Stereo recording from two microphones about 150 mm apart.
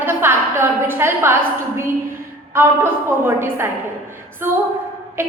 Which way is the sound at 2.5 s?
15° right (ahead or behind).